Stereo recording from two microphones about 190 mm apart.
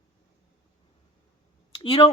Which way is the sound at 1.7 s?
25° left (ahead or behind).